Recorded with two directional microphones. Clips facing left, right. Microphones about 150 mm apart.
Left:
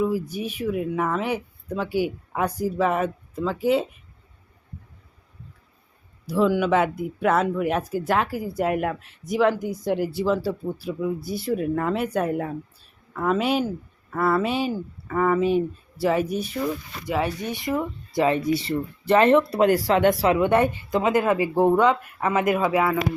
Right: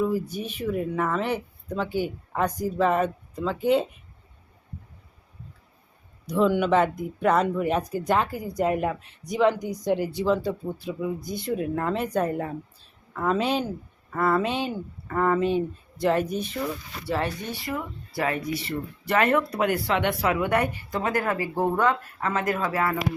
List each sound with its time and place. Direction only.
0.0 s speech: 10° left (ahead or behind)
6.2 s speech: 5° left (ahead or behind)
17.6 s a woman's voice: 20° left (ahead or behind); by 20.1 s 40° left (ahead or behind)
20.2 s a woman's voice: 25° left (ahead or behind)